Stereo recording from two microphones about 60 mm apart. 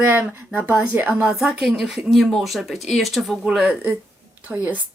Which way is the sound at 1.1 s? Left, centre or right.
Centre.